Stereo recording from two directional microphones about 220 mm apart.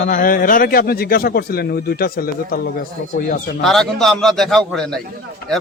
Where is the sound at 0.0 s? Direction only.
40° left (ahead or behind).